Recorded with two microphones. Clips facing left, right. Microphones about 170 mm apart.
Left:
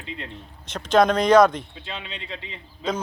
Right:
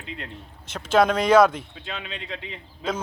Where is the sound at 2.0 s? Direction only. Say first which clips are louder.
Right 1 dB; 50° right (ahead or behind).